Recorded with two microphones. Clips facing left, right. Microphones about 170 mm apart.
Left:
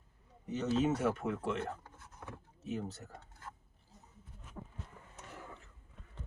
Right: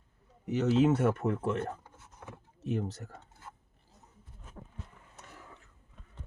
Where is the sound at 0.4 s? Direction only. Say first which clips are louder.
Right 6 dB; 90° right; by 1.2 s 70° right (ahead or behind).